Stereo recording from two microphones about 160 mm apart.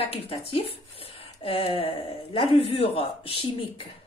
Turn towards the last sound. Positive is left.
turn(degrees=35)  # may be behind; listen again after turning